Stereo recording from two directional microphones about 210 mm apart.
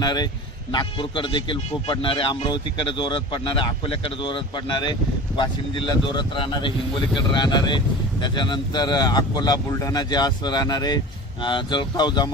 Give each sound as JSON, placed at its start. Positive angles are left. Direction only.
{"t": 0.0, "sound": "a man's voice", "side_deg": 20}